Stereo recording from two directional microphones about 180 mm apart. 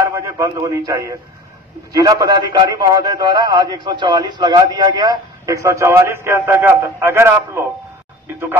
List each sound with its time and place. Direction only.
0.0 s a man's voice: 15° right (ahead or behind)